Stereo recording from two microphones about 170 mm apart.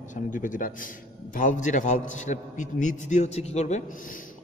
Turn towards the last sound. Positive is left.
turn(degrees=40)  # may be behind; listen again after turning